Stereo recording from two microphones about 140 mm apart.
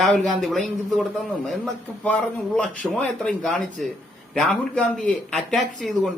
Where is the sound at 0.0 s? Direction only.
Centre (ahead or behind).